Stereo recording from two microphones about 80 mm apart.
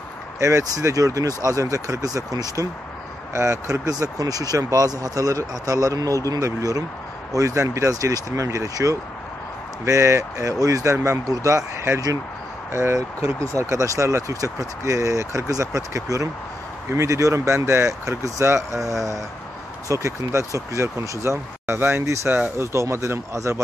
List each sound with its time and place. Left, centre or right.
0.4 s speech: right